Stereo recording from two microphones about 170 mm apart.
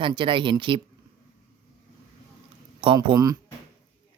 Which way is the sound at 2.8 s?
30° right (ahead or behind).